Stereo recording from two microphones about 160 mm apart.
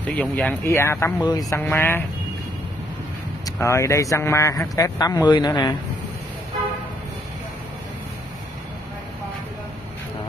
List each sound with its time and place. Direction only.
0.0 s speech: 5° left (ahead or behind)
3.4 s speech: 20° left (ahead or behind)